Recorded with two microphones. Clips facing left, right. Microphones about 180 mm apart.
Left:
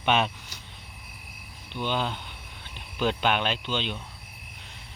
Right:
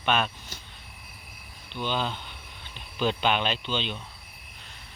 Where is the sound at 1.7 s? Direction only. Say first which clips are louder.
Left 1 dB; 15° left (ahead or behind).